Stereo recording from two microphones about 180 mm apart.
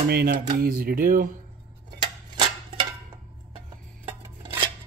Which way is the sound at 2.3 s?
25° right (ahead or behind).